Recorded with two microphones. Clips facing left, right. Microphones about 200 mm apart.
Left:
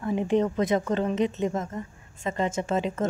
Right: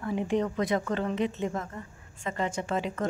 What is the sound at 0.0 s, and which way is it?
Speech, 25° left (ahead or behind).